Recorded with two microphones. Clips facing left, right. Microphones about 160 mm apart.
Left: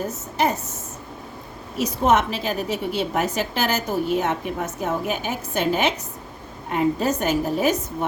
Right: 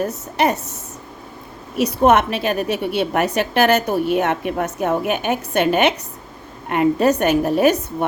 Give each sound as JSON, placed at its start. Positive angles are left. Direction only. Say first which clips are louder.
{"t": 0.0, "sound": "a woman's voice", "louder": "right 4 dB", "side_deg": -70}
{"t": 1.7, "sound": "a woman's voice", "louder": "right 5 dB", "side_deg": -65}